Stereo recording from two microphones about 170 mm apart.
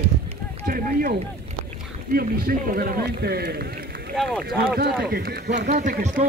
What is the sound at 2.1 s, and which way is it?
Speech, 60° right (ahead or behind).